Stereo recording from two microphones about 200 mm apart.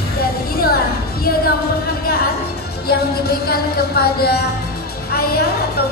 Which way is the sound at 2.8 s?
50° left (ahead or behind).